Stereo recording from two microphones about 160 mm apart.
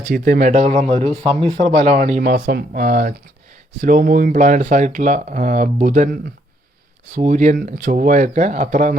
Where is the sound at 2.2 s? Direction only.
70° right (ahead or behind).